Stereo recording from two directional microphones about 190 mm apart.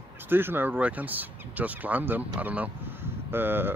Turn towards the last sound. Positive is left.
turn(degrees=-10)  # may be behind; listen again after turning